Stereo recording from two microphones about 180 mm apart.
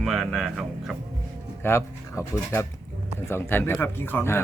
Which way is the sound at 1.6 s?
15° left (ahead or behind).